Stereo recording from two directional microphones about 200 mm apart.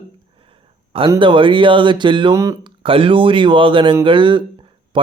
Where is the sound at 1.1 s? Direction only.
25° right (ahead or behind).